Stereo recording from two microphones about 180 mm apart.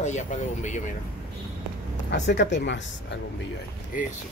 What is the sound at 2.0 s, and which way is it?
Speech, 75° left (ahead or behind).